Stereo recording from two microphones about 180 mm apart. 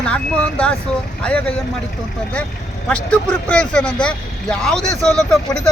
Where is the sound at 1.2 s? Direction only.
5° left (ahead or behind).